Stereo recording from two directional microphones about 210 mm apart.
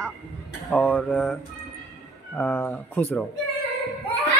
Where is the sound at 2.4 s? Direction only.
10° left (ahead or behind).